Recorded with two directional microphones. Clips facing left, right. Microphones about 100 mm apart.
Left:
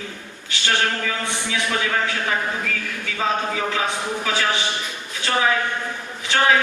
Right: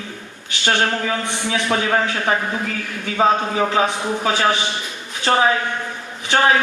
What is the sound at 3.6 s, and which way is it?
A man's voice, 30° right (ahead or behind).